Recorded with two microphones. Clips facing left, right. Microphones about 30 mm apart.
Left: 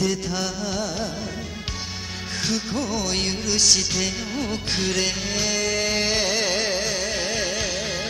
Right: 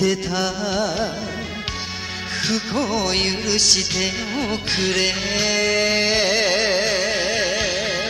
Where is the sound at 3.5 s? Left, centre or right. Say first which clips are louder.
Even; centre.